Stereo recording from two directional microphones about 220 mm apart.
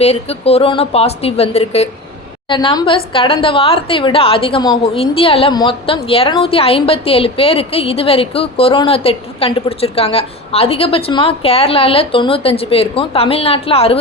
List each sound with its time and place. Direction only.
0.0 s a woman's voice: 25° left (ahead or behind)